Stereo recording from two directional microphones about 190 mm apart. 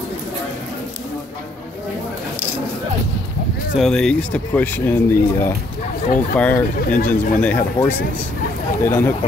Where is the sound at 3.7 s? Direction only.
Centre (ahead or behind).